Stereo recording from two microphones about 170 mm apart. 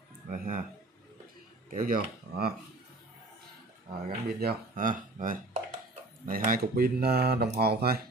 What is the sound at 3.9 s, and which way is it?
Speech, 65° right (ahead or behind).